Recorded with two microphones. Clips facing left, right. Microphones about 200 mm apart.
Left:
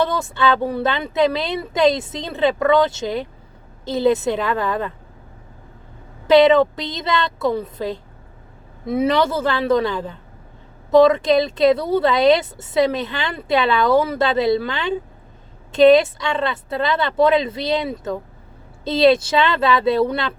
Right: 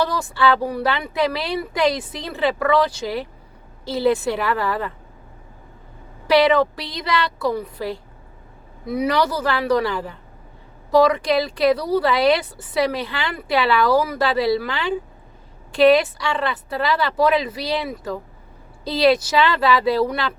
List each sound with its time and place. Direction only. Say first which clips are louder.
0.0 s speech: left 1 dB; 25° left (ahead or behind)
6.2 s speech: left 4 dB; 20° left (ahead or behind)